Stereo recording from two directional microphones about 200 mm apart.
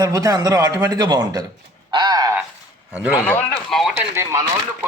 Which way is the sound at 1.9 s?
20° right (ahead or behind).